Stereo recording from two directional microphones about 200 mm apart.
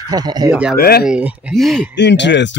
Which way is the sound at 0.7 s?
50° left (ahead or behind).